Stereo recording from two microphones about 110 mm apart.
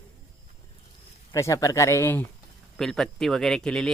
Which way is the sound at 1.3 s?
30° left (ahead or behind).